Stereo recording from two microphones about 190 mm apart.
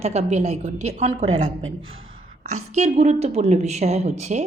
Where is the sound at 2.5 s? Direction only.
35° right (ahead or behind).